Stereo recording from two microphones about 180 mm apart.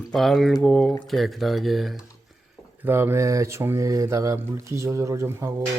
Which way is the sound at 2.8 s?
10° right (ahead or behind).